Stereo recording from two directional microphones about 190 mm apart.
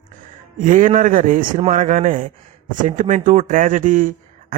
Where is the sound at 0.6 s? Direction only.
45° right (ahead or behind).